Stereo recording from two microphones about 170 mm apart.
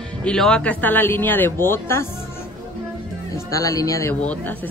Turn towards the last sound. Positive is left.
turn(degrees=10)  # may be behind; listen again after turning